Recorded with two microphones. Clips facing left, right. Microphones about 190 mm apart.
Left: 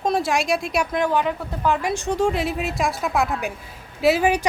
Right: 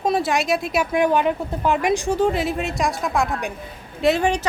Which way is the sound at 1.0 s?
15° right (ahead or behind).